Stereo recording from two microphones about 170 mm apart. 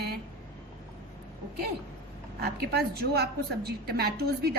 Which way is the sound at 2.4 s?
65° right (ahead or behind).